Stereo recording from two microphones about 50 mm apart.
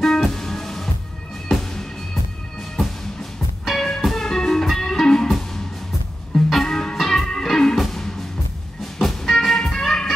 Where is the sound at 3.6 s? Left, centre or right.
Centre.